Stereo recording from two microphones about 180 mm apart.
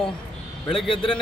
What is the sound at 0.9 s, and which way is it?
Speech, 30° left (ahead or behind).